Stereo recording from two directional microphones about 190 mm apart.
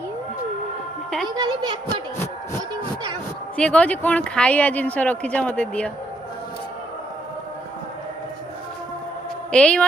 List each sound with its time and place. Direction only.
1.4 s a woman's voice: 20° right (ahead or behind)
3.6 s a woman's voice: 5° left (ahead or behind)
9.5 s a woman's voice: 5° left (ahead or behind)